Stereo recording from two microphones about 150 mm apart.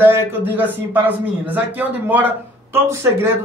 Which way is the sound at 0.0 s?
15° right (ahead or behind).